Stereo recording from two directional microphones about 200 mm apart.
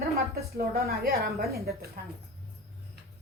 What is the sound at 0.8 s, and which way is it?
A woman's voice, 50° right (ahead or behind).